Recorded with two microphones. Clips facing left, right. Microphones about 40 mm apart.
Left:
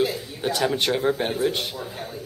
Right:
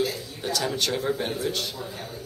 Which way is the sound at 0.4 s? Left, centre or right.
Left.